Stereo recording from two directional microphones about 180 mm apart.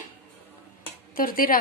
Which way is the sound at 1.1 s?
55° left (ahead or behind).